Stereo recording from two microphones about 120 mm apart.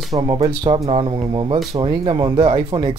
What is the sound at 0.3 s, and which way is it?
Speech, 45° right (ahead or behind).